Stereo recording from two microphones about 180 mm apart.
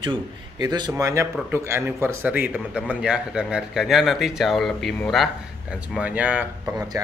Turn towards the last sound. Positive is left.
turn(degrees=-10)  # may be behind; listen again after turning